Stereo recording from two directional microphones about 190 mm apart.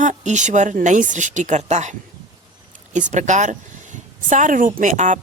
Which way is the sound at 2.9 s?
40° right (ahead or behind).